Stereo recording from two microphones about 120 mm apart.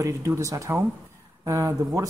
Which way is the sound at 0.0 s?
25° right (ahead or behind).